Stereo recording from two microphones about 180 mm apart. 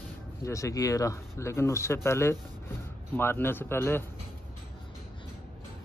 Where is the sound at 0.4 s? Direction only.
15° left (ahead or behind).